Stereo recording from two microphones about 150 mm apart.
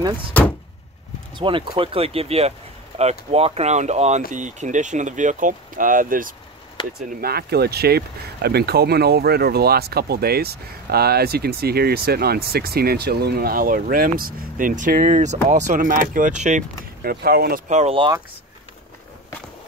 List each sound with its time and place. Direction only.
0.3 s speech: 10° left (ahead or behind)
1.3 s speech: 30° right (ahead or behind); by 6.3 s 65° right (ahead or behind)
7.1 s speech: 85° right; by 16.6 s 55° right (ahead or behind)
17.0 s speech: 90° right
17.6 s speech: 50° right (ahead or behind)